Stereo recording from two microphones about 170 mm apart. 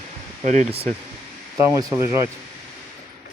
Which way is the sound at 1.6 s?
15° right (ahead or behind).